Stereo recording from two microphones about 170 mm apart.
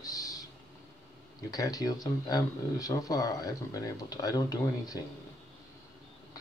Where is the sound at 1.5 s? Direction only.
20° left (ahead or behind).